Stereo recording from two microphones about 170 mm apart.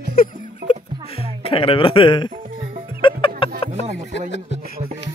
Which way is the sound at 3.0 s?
30° left (ahead or behind).